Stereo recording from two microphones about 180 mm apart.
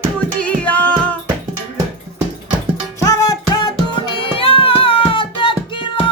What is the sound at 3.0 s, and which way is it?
Music, 20° left (ahead or behind).